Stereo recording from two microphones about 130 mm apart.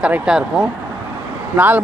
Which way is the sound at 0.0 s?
5° right (ahead or behind).